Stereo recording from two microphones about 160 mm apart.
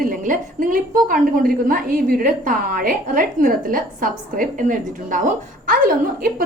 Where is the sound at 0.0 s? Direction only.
60° right (ahead or behind).